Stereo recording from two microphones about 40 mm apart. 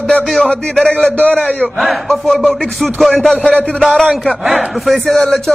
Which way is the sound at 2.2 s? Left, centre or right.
Centre.